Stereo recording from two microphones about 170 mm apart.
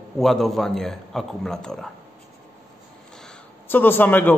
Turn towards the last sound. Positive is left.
turn(degrees=10)  # may be behind; listen again after turning